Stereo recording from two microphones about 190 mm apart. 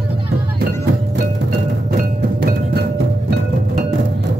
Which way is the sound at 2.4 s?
55° right (ahead or behind).